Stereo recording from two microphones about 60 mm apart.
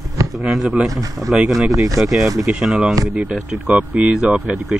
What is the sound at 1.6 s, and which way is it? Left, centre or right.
Speech, centre.